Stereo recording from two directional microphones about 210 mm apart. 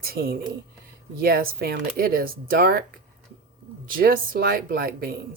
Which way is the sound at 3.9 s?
45° right (ahead or behind).